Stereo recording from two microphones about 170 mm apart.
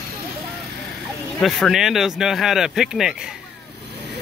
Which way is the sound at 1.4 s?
Centre (ahead or behind).